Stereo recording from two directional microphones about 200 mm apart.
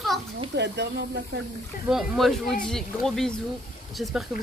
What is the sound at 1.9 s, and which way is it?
A woman's voice, centre (ahead or behind).